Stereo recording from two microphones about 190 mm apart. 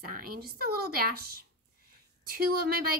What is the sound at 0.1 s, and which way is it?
A woman's voice, 50° right (ahead or behind).